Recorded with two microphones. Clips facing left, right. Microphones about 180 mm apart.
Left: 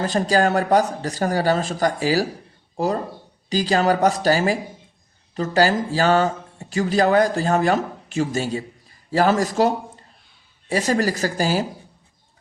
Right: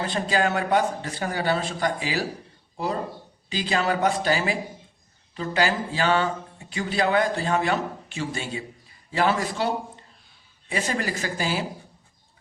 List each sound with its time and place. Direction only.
0.0 s a man's voice: 40° left (ahead or behind)